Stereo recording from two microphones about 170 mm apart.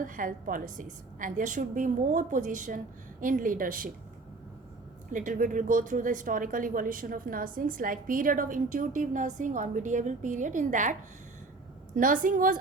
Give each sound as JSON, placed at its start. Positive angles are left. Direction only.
{"t": 0.0, "sound": "a woman's voice", "side_deg": -50}
{"t": 5.1, "sound": "a woman's voice", "side_deg": -50}
{"t": 11.9, "sound": "a woman's voice", "side_deg": -55}